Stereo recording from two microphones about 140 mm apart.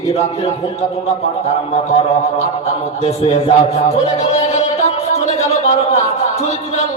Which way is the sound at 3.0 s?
45° left (ahead or behind).